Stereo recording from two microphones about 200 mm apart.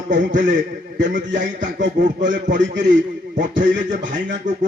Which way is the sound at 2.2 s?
65° right (ahead or behind).